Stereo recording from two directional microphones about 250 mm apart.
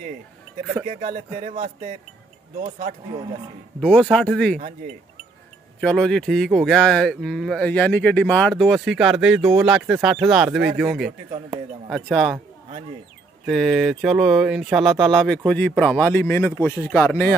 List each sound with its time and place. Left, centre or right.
0.8 s speech: right
3.8 s speech: centre
5.8 s speech: centre
13.5 s speech: centre